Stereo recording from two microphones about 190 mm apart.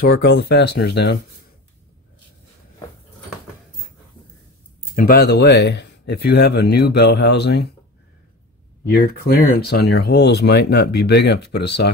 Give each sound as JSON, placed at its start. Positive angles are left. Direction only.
{"t": 0.0, "sound": "speech", "side_deg": 60}
{"t": 4.9, "sound": "speech", "side_deg": 50}
{"t": 8.9, "sound": "speech", "side_deg": 55}